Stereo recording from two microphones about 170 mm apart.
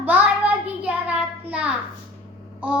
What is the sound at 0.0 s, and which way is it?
Child singing, 10° right (ahead or behind).